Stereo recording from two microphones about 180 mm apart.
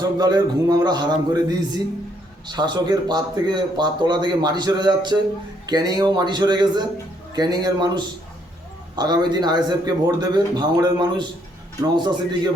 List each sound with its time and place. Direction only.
0.2 s speech: 20° right (ahead or behind)